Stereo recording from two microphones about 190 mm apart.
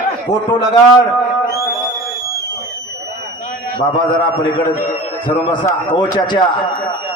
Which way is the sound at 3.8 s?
25° left (ahead or behind).